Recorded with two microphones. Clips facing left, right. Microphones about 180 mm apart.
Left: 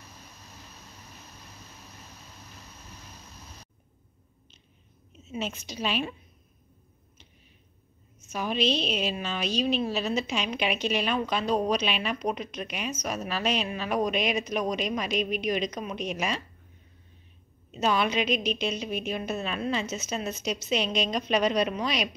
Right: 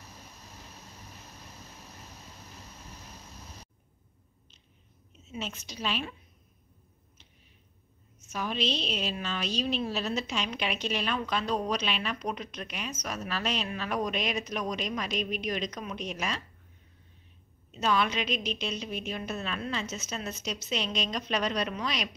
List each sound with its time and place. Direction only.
5.3 s a woman's voice: 15° left (ahead or behind)
8.3 s a woman's voice: 10° left (ahead or behind)
17.6 s a woman's voice: 15° left (ahead or behind)